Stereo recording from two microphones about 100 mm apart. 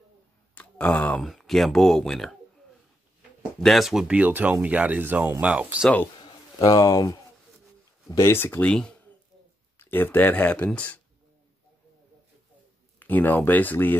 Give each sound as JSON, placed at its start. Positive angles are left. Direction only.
{"t": 0.6, "sound": "speech", "side_deg": 15}
{"t": 1.2, "sound": "speech", "side_deg": 0}
{"t": 3.6, "sound": "speech", "side_deg": 0}
{"t": 4.1, "sound": "speech", "side_deg": -15}
{"t": 6.8, "sound": "speech", "side_deg": 55}
{"t": 8.1, "sound": "speech", "side_deg": 25}
{"t": 8.6, "sound": "speech", "side_deg": 5}
{"t": 9.8, "sound": "speech", "side_deg": 20}
{"t": 13.0, "sound": "speech", "side_deg": 15}